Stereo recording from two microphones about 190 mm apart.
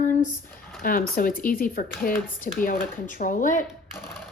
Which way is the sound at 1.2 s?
50° left (ahead or behind).